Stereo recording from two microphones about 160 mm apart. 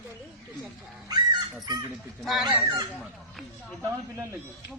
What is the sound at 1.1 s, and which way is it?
Speech, 25° right (ahead or behind).